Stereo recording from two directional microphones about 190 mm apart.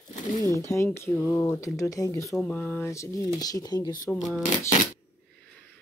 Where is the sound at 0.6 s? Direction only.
15° left (ahead or behind).